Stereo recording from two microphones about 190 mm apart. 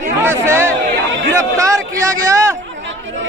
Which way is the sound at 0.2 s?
15° right (ahead or behind).